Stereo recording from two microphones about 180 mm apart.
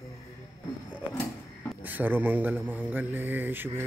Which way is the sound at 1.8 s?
10° right (ahead or behind).